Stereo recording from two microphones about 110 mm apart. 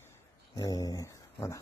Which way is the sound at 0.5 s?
35° left (ahead or behind).